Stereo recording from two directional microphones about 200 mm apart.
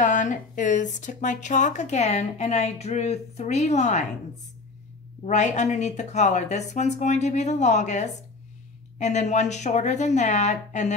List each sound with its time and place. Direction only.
0.0 s speech: 40° left (ahead or behind)
5.2 s speech: 35° left (ahead or behind)